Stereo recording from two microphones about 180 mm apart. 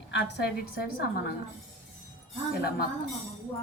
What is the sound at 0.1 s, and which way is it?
A woman's voice, 65° left (ahead or behind).